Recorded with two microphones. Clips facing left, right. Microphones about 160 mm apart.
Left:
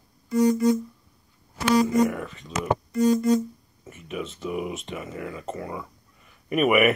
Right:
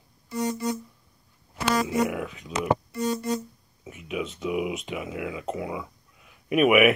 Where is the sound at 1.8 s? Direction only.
Centre (ahead or behind).